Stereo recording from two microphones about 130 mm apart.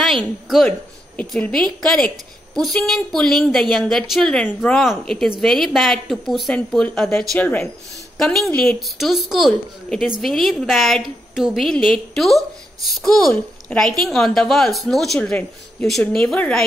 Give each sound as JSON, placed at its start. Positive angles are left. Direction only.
{"t": 0.0, "sound": "a woman's voice", "side_deg": 0}
{"t": 7.3, "sound": "speech", "side_deg": 20}
{"t": 8.2, "sound": "a woman's voice", "side_deg": 5}